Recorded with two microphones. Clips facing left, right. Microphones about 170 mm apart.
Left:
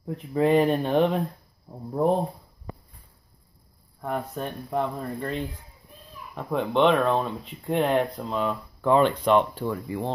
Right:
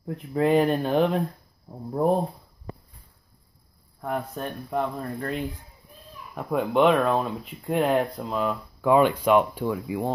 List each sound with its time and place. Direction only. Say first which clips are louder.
0.0 s speech: left 1 dB; centre (ahead or behind)
4.0 s speech: even; centre (ahead or behind)